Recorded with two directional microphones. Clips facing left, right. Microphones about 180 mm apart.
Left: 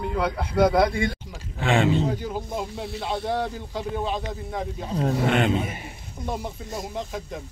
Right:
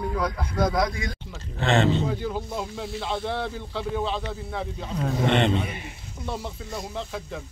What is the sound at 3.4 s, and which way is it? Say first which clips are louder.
A man's voice: left 1 dB; 15° left (ahead or behind).